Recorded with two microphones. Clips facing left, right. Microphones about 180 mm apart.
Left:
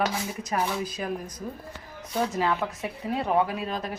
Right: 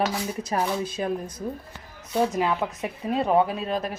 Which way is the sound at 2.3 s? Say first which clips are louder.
Right 2 dB; 15° right (ahead or behind).